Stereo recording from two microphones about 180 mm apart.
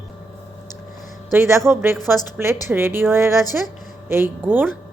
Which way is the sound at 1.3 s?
15° right (ahead or behind).